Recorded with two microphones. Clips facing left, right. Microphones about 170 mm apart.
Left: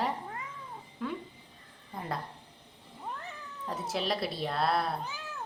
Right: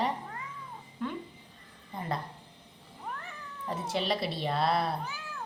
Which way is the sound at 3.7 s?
Centre (ahead or behind).